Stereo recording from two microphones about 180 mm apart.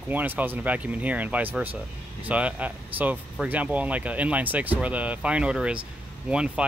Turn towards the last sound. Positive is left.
turn(degrees=-5)  # may be behind; listen again after turning